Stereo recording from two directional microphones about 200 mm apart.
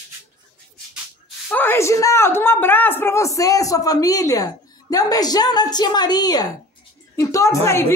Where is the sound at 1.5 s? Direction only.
10° left (ahead or behind).